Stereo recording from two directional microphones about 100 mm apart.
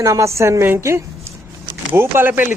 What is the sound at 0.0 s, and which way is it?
Speech, 30° right (ahead or behind).